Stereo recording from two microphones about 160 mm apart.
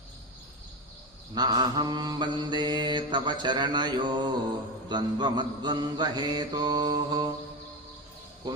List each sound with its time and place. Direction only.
1.3 s mantra: 25° right (ahead or behind)